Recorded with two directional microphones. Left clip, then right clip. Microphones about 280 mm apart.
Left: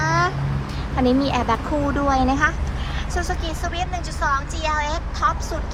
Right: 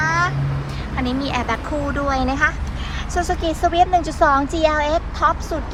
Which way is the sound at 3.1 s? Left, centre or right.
Centre.